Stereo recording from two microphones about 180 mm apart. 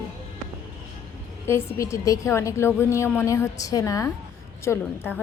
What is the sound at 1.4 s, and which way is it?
A woman's voice, 15° left (ahead or behind).